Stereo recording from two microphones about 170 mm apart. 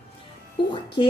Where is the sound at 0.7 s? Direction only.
25° left (ahead or behind).